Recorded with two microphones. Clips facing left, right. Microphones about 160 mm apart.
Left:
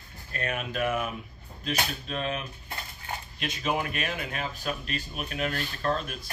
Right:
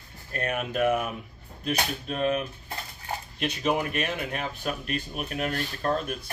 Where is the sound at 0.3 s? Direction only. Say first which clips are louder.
Right 3 dB; 50° right (ahead or behind).